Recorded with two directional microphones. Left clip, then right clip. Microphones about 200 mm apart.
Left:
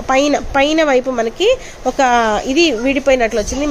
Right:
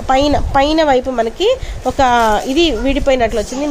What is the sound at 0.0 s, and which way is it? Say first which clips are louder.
A woman's voice: right 1 dB; centre (ahead or behind).